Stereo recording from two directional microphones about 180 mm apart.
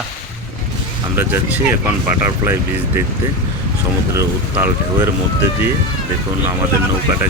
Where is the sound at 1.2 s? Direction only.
10° right (ahead or behind).